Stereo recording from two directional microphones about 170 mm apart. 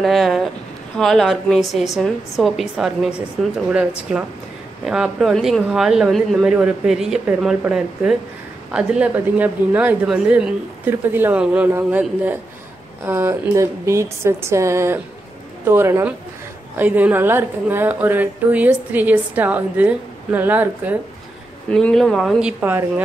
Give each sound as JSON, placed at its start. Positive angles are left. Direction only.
{"t": 0.0, "sound": "speech", "side_deg": 0}
{"t": 21.6, "sound": "speech", "side_deg": 5}